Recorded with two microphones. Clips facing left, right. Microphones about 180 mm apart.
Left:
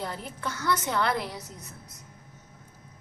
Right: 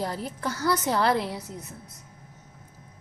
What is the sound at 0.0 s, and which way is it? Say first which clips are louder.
A woman's voice: right 4 dB; 35° right (ahead or behind).